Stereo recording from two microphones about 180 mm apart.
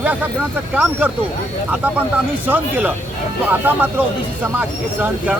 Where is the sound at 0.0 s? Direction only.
10° right (ahead or behind).